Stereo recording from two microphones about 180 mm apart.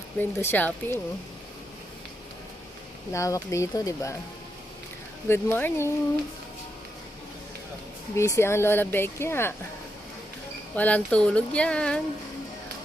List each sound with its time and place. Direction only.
0.2 s speech: 10° left (ahead or behind)
3.1 s speech: 15° left (ahead or behind)
5.3 s speech: 10° left (ahead or behind)
8.1 s speech: 15° left (ahead or behind)
10.8 s speech: 10° left (ahead or behind)